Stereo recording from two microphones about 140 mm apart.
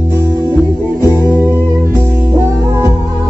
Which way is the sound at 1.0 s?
15° right (ahead or behind).